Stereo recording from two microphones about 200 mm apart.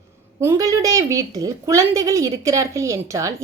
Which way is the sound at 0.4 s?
15° right (ahead or behind).